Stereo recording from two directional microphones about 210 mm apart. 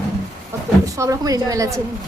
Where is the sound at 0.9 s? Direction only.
15° right (ahead or behind).